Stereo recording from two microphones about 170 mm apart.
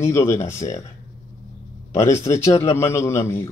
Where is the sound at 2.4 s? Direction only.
40° left (ahead or behind).